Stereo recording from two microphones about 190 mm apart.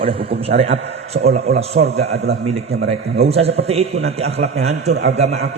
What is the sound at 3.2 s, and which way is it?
A man's voice, 35° right (ahead or behind).